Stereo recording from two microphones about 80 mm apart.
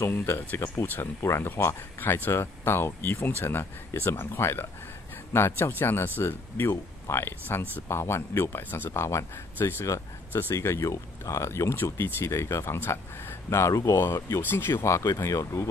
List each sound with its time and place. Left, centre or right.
0.0 s speech: left
8.9 s speech: left
9.8 s speech: left
13.9 s speech: left